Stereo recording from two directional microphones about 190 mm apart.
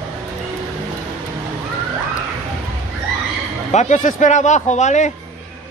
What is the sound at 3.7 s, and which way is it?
A man's voice, 35° left (ahead or behind).